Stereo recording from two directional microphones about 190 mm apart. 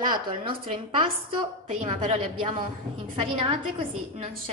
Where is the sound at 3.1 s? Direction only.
25° right (ahead or behind).